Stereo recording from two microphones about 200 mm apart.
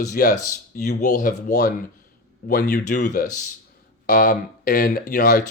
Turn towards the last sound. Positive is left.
turn(degrees=45)  # may be behind; listen again after turning